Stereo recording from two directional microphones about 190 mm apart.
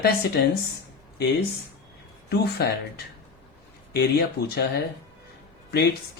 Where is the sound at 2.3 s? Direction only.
60° left (ahead or behind).